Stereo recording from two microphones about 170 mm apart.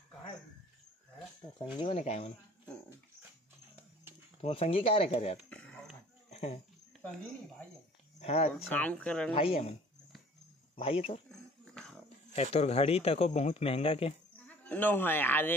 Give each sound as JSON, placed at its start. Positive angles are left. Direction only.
{"t": 1.8, "sound": "speech", "side_deg": 35}
{"t": 4.4, "sound": "speech", "side_deg": 35}
{"t": 5.5, "sound": "a sound", "side_deg": 5}
{"t": 6.3, "sound": "a sound", "side_deg": 40}
{"t": 8.2, "sound": "speech", "side_deg": 35}
{"t": 8.6, "sound": "speech", "side_deg": 10}
{"t": 9.3, "sound": "speech", "side_deg": 35}
{"t": 10.8, "sound": "speech", "side_deg": 35}
{"t": 12.4, "sound": "speech", "side_deg": 40}
{"t": 14.4, "sound": "a man's voice", "side_deg": 10}